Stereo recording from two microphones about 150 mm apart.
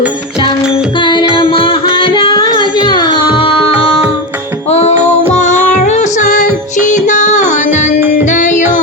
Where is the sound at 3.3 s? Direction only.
40° left (ahead or behind).